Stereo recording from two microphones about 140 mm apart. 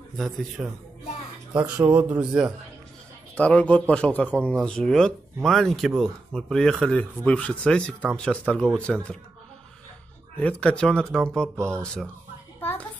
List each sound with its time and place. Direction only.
0.6 s speech: 10° right (ahead or behind)
1.6 s speech: 30° right (ahead or behind)
2.0 s speech: 10° right (ahead or behind)
3.3 s a man's voice: 10° left (ahead or behind)
10.4 s a man's voice: 10° left (ahead or behind)
12.5 s music: 15° left (ahead or behind)